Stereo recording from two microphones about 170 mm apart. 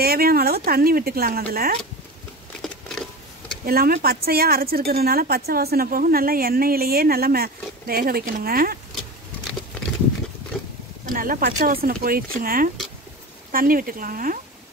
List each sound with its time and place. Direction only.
0.0 s speech: 65° right (ahead or behind)
2.6 s a sound: centre (ahead or behind)
3.6 s speech: 60° right (ahead or behind)
10.5 s boat: centre (ahead or behind)
11.1 s speech: 55° right (ahead or behind)